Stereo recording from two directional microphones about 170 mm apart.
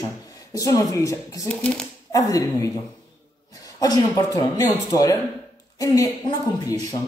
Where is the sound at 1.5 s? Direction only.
5° left (ahead or behind).